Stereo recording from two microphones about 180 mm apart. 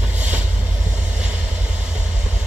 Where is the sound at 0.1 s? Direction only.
10° right (ahead or behind).